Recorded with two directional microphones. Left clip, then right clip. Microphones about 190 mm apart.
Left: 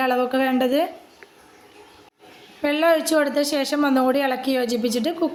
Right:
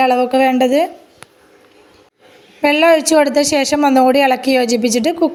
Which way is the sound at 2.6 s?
35° right (ahead or behind).